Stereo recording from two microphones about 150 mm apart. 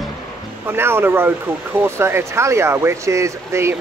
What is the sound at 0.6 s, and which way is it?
Speech, 15° right (ahead or behind).